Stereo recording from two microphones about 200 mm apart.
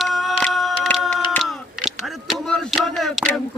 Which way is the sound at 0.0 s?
Centre (ahead or behind).